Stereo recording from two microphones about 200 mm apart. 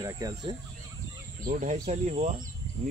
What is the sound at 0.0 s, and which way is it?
Speech, 20° right (ahead or behind).